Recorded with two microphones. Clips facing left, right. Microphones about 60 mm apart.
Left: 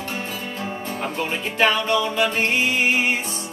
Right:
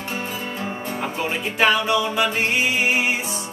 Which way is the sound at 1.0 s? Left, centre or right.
Centre.